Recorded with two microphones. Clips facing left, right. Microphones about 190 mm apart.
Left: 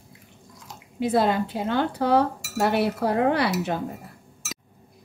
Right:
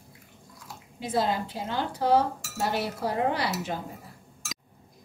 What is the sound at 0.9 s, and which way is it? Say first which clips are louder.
A woman's voice: left 6 dB; 60° left (ahead or behind).